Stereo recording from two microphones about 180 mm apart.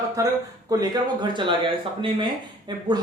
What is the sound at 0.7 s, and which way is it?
Speech, 25° right (ahead or behind).